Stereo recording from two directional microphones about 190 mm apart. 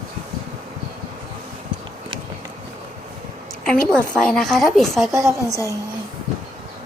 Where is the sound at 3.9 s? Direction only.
5° left (ahead or behind).